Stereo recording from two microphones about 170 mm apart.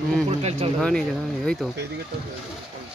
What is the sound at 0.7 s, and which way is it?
Speech, 5° left (ahead or behind).